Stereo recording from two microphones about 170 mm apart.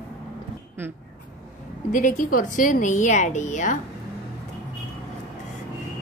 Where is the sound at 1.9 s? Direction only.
50° left (ahead or behind).